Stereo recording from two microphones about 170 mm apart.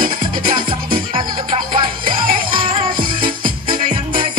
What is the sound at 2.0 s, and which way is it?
Music, 55° right (ahead or behind).